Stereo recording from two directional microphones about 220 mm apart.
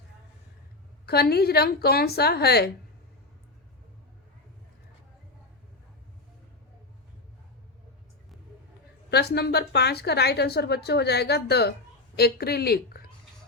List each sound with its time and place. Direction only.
1.0 s speech: 45° left (ahead or behind)
9.0 s speech: 45° left (ahead or behind)